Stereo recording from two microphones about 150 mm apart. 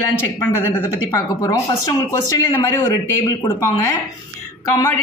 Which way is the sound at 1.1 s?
20° left (ahead or behind).